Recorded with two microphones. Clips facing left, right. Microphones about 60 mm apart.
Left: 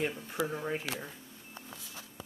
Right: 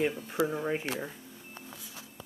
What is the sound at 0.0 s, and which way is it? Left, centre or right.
Speech, centre.